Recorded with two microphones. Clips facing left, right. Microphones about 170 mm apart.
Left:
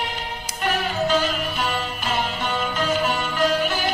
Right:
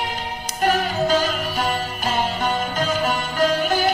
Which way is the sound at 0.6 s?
40° right (ahead or behind).